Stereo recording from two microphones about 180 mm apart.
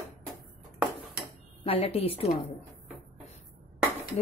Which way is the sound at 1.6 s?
30° left (ahead or behind).